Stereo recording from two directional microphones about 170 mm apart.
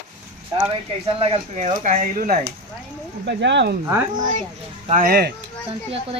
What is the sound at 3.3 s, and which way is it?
Speech, 90° right.